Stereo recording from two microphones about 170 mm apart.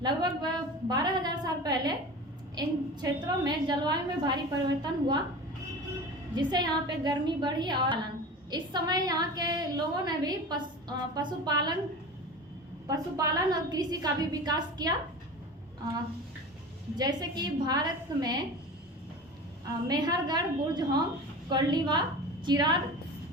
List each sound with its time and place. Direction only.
0.0 s a woman's voice: 25° right (ahead or behind)
6.3 s a woman's voice: 25° right (ahead or behind)
12.9 s a woman's voice: 20° right (ahead or behind)
16.9 s a woman's voice: 25° right (ahead or behind)
19.9 s a woman's voice: 25° right (ahead or behind)